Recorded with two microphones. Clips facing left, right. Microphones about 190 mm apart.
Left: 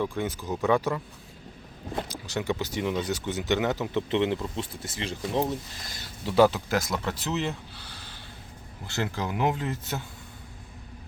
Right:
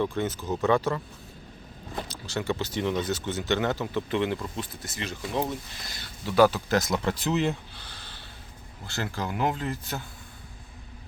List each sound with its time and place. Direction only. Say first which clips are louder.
0.0 s speech: right 1 dB; 10° left (ahead or behind)
2.0 s a man's voice: right 2 dB; 15° left (ahead or behind)
6.7 s a man's voice: right 3 dB; 10° left (ahead or behind)